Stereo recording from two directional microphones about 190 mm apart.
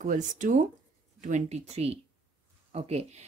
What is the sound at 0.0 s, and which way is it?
Speech, 40° right (ahead or behind).